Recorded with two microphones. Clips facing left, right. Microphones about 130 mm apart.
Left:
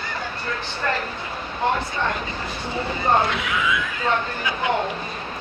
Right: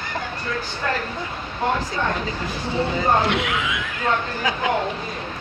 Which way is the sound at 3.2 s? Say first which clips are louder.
Right 3 dB; 75° right (ahead or behind).